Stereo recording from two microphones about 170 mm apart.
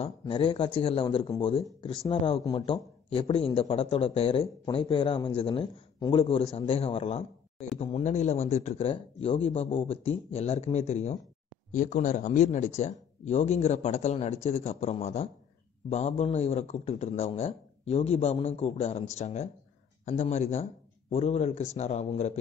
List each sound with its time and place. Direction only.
0.0 s a man's voice: 30° left (ahead or behind)